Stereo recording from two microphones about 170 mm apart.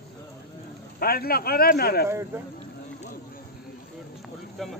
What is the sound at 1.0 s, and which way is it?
A man's voice, 65° left (ahead or behind).